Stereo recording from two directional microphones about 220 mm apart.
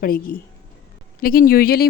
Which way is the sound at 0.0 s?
40° left (ahead or behind).